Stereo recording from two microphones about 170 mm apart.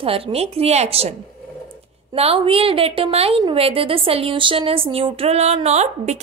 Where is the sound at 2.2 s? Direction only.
35° right (ahead or behind).